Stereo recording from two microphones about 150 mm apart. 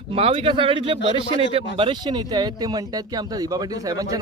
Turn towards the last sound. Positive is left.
turn(degrees=-25)  # may be behind; listen again after turning